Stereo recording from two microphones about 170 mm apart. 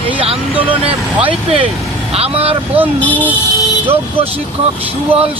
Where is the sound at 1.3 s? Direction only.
30° right (ahead or behind).